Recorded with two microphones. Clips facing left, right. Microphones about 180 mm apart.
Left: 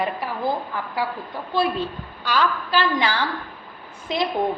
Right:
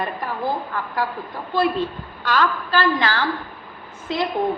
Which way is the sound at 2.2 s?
10° left (ahead or behind).